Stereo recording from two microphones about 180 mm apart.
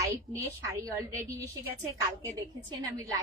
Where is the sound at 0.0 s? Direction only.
15° right (ahead or behind).